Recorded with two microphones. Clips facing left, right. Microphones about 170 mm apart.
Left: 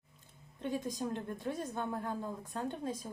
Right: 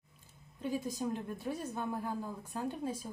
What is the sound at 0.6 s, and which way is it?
A woman's voice, 10° right (ahead or behind).